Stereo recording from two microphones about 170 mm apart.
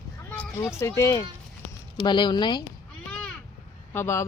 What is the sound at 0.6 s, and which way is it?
Speech, 15° left (ahead or behind).